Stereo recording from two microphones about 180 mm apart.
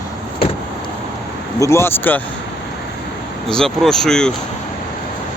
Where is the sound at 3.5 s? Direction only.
5° left (ahead or behind).